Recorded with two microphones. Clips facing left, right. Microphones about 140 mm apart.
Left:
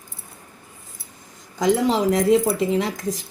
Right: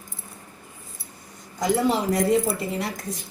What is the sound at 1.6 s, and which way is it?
Speech, 90° left.